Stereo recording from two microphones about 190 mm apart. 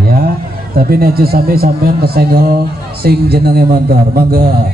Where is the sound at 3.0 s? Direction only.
55° right (ahead or behind).